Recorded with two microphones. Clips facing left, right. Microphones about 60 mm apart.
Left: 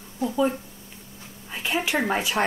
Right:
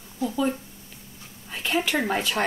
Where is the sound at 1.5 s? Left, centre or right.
Centre.